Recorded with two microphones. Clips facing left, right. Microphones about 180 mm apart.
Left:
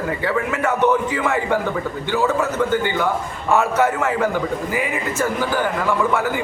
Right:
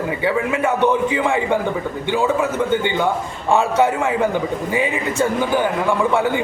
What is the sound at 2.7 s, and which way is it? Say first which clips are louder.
Speech: right 1 dB; 20° right (ahead or behind).